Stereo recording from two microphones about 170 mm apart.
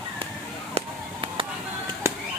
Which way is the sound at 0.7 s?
35° right (ahead or behind).